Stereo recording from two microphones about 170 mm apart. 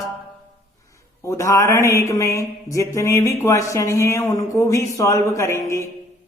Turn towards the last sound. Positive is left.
turn(degrees=15)  # may be behind; listen again after turning